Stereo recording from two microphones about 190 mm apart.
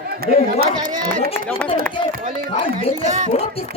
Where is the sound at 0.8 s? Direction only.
20° right (ahead or behind).